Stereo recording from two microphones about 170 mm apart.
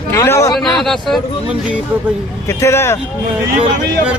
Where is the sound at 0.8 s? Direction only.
Centre (ahead or behind).